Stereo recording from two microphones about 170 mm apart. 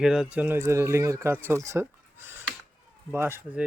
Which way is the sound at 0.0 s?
5° right (ahead or behind).